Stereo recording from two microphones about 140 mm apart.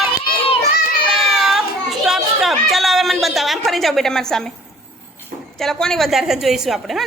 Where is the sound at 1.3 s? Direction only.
Centre (ahead or behind).